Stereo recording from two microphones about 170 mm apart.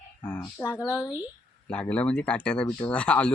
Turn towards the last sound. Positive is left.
turn(degrees=5)  # may be behind; listen again after turning